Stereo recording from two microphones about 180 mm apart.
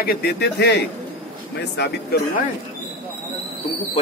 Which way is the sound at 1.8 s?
60° left (ahead or behind).